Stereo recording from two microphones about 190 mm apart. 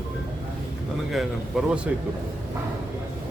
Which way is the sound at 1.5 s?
Centre (ahead or behind).